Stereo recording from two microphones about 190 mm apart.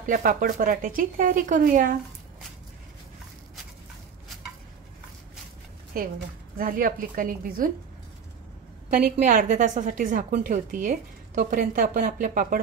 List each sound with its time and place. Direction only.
0.0 s a woman's voice: 45° right (ahead or behind)
5.9 s a woman's voice: 50° right (ahead or behind)
9.2 s a woman's voice: 45° right (ahead or behind)